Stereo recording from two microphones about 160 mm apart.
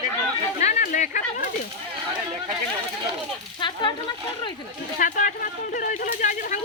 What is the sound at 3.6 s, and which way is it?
Speech, 30° left (ahead or behind).